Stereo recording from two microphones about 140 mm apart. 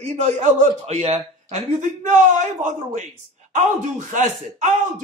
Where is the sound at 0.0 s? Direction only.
55° right (ahead or behind).